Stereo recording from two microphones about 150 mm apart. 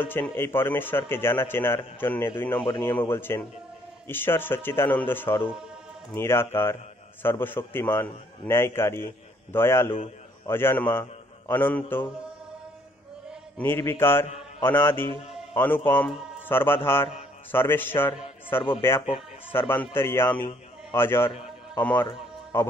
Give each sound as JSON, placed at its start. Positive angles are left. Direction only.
{"t": 0.4, "sound": "a man's voice", "side_deg": 15}
{"t": 2.6, "sound": "speech", "side_deg": 35}
{"t": 3.0, "sound": "a man's voice", "side_deg": 15}
{"t": 5.3, "sound": "speech", "side_deg": 35}
{"t": 6.1, "sound": "a man's voice", "side_deg": 15}
{"t": 13.6, "sound": "a man's voice", "side_deg": 15}